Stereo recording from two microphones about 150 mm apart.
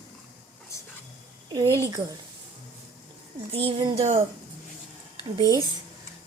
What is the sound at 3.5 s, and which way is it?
Speech, 40° right (ahead or behind).